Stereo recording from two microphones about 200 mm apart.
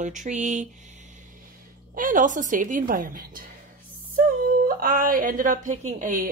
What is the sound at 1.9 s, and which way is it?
Speech, 40° right (ahead or behind).